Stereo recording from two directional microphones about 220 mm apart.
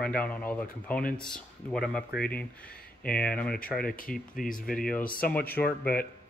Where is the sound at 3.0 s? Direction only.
5° left (ahead or behind).